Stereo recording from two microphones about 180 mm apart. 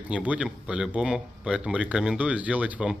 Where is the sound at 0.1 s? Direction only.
5° right (ahead or behind).